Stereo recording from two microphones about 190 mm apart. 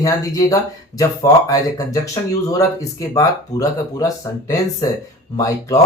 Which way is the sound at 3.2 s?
20° left (ahead or behind).